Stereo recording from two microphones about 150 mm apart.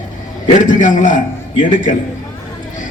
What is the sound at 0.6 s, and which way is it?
A man's voice, 60° left (ahead or behind).